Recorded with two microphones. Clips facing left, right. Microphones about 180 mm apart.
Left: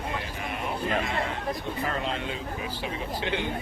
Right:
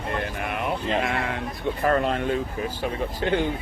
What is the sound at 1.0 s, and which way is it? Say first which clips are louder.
A man's voice: right 3 dB; 55° right (ahead or behind).